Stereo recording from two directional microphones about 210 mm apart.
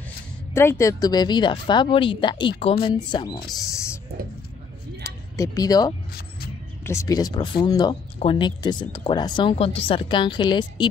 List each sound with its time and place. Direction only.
0.6 s speech: 15° left (ahead or behind)
5.0 s tick-tock: 15° left (ahead or behind)
6.8 s speech: 15° left (ahead or behind)